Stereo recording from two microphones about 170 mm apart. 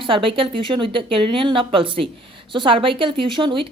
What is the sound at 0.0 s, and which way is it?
A woman's voice, 30° right (ahead or behind).